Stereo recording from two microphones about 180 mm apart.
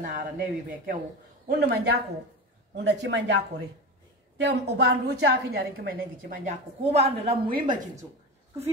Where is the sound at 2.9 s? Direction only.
75° right (ahead or behind); by 7.3 s 35° right (ahead or behind).